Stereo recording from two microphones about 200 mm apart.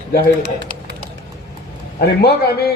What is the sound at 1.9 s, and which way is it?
Speech, 50° left (ahead or behind).